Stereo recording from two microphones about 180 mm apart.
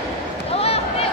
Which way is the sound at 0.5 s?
35° left (ahead or behind).